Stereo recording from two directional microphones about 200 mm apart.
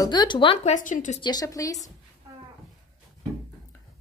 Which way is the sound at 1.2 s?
20° left (ahead or behind).